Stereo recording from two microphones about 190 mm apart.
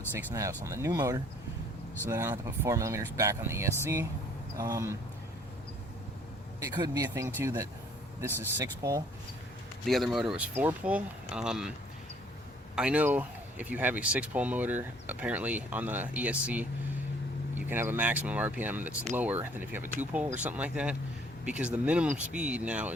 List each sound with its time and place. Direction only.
0.6 s a man's voice: 15° right (ahead or behind)
6.6 s a man's voice: 20° right (ahead or behind)
9.8 s speech: centre (ahead or behind)
12.7 s speech: 5° right (ahead or behind)
17.7 s speech: 10° right (ahead or behind)